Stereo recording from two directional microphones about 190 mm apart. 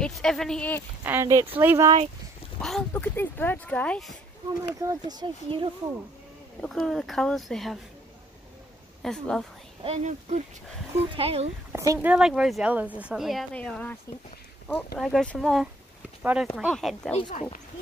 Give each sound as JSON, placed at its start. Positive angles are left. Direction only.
{"t": 0.0, "sound": "speech", "side_deg": 5}
{"t": 1.0, "sound": "speech", "side_deg": -15}
{"t": 2.6, "sound": "speech", "side_deg": 5}
{"t": 4.8, "sound": "speech", "side_deg": -20}
{"t": 6.6, "sound": "speech", "side_deg": 0}
{"t": 9.0, "sound": "speech", "side_deg": 0}
{"t": 9.8, "sound": "speech", "side_deg": -35}
{"t": 11.7, "sound": "speech", "side_deg": -15}
{"t": 12.1, "sound": "speech", "side_deg": -5}
{"t": 15.0, "sound": "speech", "side_deg": 5}
{"t": 17.1, "sound": "speech", "side_deg": 35}